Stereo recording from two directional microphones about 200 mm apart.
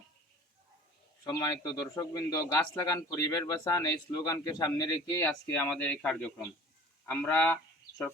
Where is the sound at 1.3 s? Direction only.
15° left (ahead or behind).